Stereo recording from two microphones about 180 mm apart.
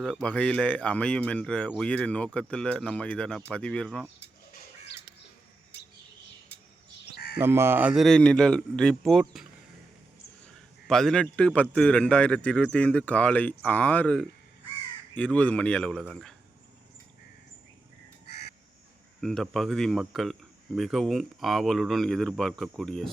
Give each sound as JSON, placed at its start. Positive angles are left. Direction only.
{"t": 0.0, "sound": "speech", "side_deg": 5}
{"t": 7.1, "sound": "crow", "side_deg": 60}
{"t": 7.3, "sound": "a man's voice", "side_deg": -15}
{"t": 18.3, "sound": "crow", "side_deg": 65}
{"t": 19.2, "sound": "speech", "side_deg": 0}